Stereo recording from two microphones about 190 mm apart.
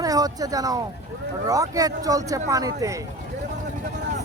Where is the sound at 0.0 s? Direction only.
20° right (ahead or behind).